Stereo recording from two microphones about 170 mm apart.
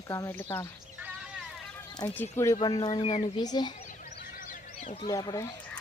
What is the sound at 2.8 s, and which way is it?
Speech, 35° left (ahead or behind).